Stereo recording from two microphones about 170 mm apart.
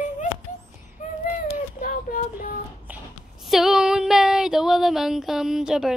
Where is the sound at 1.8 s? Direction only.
55° left (ahead or behind).